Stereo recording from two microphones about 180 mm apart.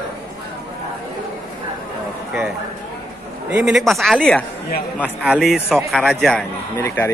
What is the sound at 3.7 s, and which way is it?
A man's voice, centre (ahead or behind).